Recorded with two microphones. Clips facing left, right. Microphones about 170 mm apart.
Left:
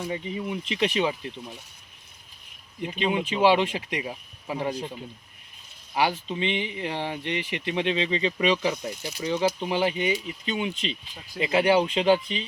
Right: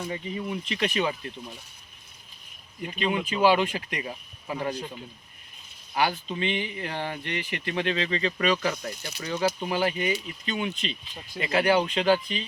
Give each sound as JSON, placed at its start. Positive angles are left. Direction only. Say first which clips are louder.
{"t": 0.0, "sound": "speech", "louder": "left 2 dB", "side_deg": 15}
{"t": 2.8, "sound": "speech", "louder": "left 2 dB", "side_deg": 25}
{"t": 5.9, "sound": "speech", "louder": "left 1 dB", "side_deg": 20}
{"t": 8.4, "sound": "speech", "louder": "left 2 dB", "side_deg": 10}
{"t": 11.3, "sound": "speech", "louder": "left 2 dB", "side_deg": 25}